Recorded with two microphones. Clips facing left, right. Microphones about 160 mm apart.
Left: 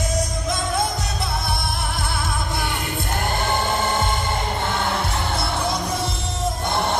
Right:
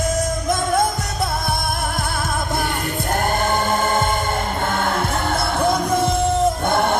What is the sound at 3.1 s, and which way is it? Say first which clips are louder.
Music: right 4 dB; 50° right (ahead or behind).